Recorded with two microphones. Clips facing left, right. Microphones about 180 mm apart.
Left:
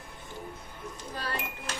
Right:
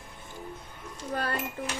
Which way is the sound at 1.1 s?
50° right (ahead or behind).